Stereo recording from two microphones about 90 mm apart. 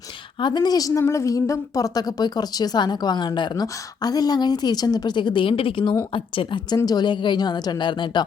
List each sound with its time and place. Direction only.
0.3 s a woman's voice: 55° left (ahead or behind); by 6.6 s 75° left (ahead or behind)
6.7 s a woman's voice: 45° left (ahead or behind)